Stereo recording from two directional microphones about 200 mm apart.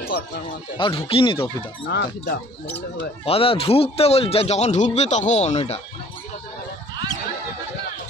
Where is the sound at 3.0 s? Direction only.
30° left (ahead or behind).